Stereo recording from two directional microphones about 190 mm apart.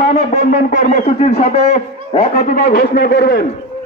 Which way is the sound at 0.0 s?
35° left (ahead or behind).